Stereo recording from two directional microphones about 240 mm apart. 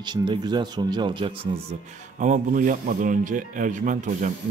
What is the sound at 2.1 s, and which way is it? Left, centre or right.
Speech, right.